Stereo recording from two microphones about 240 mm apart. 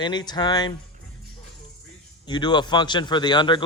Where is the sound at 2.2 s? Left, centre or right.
Centre.